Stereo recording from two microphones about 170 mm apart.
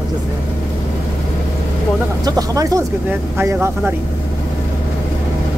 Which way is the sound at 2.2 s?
20° right (ahead or behind).